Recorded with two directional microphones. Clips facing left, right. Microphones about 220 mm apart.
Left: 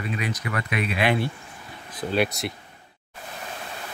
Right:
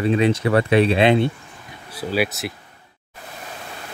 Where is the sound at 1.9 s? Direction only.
5° right (ahead or behind).